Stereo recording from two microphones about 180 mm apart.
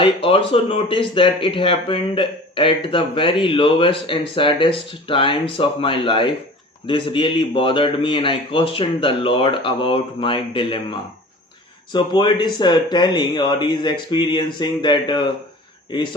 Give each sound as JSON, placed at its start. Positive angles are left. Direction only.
{"t": 0.0, "sound": "speech", "side_deg": 30}
{"t": 11.9, "sound": "speech", "side_deg": 25}